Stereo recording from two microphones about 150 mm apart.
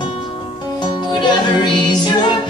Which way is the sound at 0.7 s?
30° left (ahead or behind).